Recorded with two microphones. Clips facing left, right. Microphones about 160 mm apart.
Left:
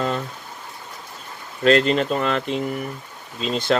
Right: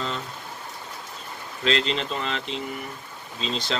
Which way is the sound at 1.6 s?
50° left (ahead or behind).